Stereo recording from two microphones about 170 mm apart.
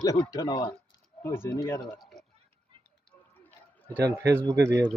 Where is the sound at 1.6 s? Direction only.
25° left (ahead or behind).